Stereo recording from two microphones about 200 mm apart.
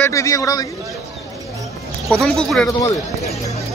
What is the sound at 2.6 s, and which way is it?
Speech, 15° left (ahead or behind).